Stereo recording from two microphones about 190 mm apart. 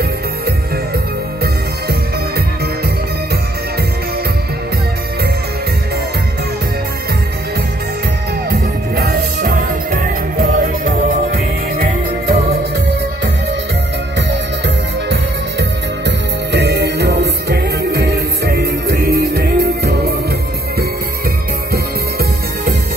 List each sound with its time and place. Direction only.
1.4 s music: 55° right (ahead or behind)
8.5 s music: 50° right (ahead or behind)
11.3 s music: 50° right (ahead or behind)
16.5 s music: 65° right (ahead or behind)